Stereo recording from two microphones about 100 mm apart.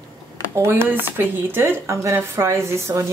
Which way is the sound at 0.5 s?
25° right (ahead or behind).